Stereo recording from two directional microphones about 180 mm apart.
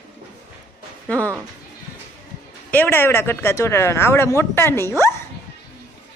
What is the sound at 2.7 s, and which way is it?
Speech, 10° left (ahead or behind).